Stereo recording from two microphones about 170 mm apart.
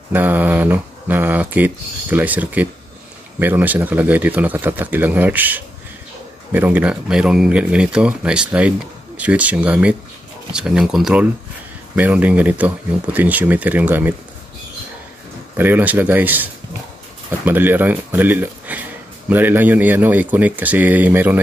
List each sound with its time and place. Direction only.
0.1 s speech: 10° right (ahead or behind)
15.5 s speech: 10° right (ahead or behind)